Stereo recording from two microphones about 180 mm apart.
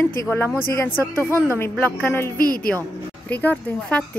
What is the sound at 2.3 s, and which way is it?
Speech, 55° left (ahead or behind).